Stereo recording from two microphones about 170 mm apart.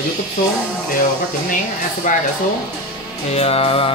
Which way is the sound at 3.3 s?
35° left (ahead or behind).